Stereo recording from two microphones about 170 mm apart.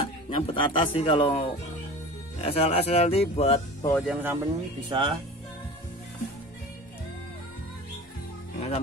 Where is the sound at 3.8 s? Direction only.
20° left (ahead or behind).